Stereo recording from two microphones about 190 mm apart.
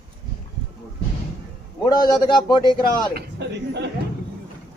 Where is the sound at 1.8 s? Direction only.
20° left (ahead or behind).